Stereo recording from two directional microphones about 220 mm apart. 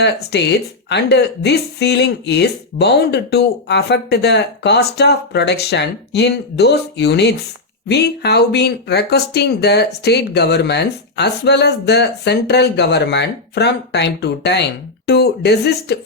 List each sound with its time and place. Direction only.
0.0 s speech: 50° left (ahead or behind)